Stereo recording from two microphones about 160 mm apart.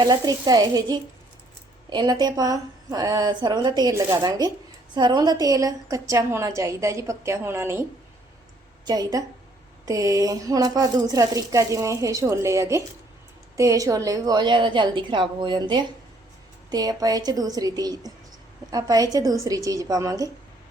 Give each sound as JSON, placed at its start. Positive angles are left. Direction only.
{"t": 0.0, "sound": "a woman's voice", "side_deg": -25}